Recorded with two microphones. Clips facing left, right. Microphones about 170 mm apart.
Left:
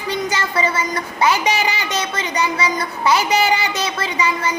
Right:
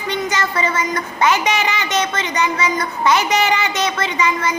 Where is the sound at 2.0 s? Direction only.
10° left (ahead or behind).